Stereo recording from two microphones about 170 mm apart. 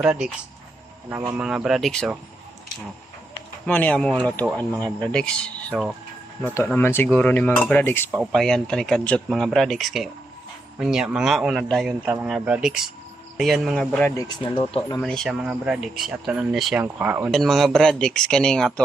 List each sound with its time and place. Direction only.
0.0 s speech: 5° right (ahead or behind)
1.4 s speech: 5° right (ahead or behind)
3.7 s speech: 10° left (ahead or behind)
5.7 s speech: centre (ahead or behind)
6.4 s speech: 10° left (ahead or behind)
8.1 s speech: centre (ahead or behind)
11.9 s speech: 10° right (ahead or behind)
14.2 s speech: 25° left (ahead or behind)
15.0 s speech: 5° left (ahead or behind)
17.3 s speech: centre (ahead or behind)